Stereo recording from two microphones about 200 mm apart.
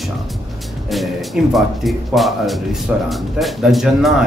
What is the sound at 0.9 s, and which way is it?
Speech, centre (ahead or behind).